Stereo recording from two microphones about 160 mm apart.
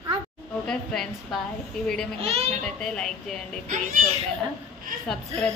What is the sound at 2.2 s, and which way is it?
Speech, 40° right (ahead or behind).